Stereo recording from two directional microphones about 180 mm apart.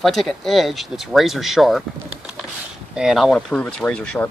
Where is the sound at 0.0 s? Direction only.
Centre (ahead or behind).